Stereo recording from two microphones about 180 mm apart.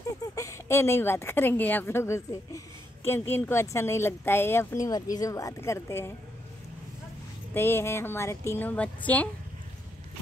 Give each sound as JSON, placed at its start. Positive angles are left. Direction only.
{"t": 0.2, "sound": "speech", "side_deg": 15}
{"t": 7.5, "sound": "speech", "side_deg": 15}